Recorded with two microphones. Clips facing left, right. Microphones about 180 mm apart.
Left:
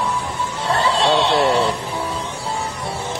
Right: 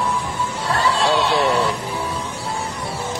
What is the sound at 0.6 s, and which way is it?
Chatter, 25° left (ahead or behind).